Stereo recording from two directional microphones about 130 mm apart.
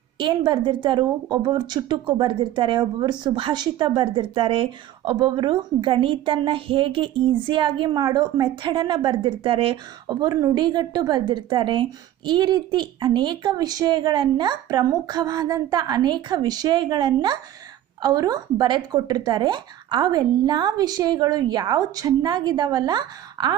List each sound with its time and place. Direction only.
0.2 s a woman's voice: 35° right (ahead or behind)
10.0 s a woman's voice: 30° right (ahead or behind)